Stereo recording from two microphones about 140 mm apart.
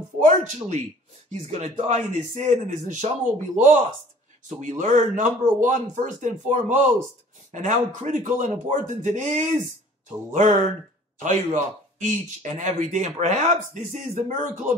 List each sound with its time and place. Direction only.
0.2 s a man's voice: 55° right (ahead or behind)